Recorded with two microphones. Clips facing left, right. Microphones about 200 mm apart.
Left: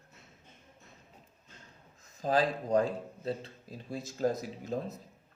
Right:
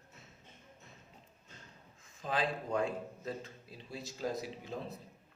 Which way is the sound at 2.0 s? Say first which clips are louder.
Left 7 dB; 40° left (ahead or behind).